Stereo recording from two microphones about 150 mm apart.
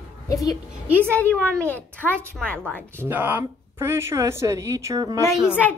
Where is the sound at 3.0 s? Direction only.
15° right (ahead or behind).